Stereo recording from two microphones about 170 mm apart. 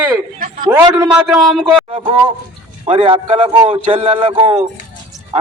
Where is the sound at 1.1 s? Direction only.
Centre (ahead or behind).